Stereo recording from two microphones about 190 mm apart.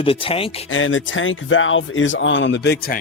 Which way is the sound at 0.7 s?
90° left.